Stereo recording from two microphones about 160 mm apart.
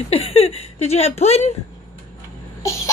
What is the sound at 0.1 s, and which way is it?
Speech, 40° left (ahead or behind).